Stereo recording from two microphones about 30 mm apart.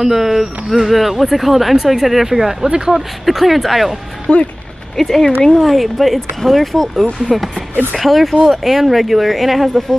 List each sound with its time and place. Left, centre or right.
0.0 s speech: centre
4.3 s speech: left
4.9 s speech: centre
7.2 s speech: centre